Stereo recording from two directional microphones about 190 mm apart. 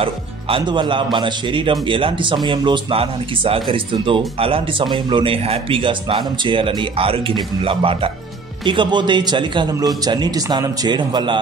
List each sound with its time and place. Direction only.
0.0 s speech: 30° right (ahead or behind)